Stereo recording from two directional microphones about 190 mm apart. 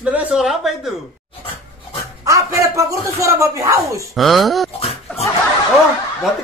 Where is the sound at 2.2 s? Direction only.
15° right (ahead or behind).